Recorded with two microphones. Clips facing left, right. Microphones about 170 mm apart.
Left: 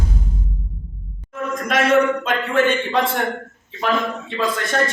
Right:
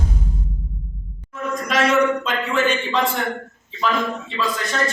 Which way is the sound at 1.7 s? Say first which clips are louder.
Left 2 dB; 50° left (ahead or behind).